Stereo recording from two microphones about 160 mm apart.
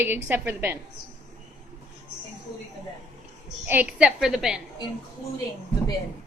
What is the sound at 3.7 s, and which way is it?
Speech, 10° right (ahead or behind).